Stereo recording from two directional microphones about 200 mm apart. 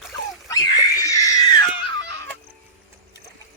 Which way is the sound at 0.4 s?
15° left (ahead or behind).